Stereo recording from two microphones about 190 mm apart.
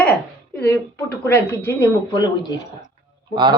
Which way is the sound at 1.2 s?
15° left (ahead or behind).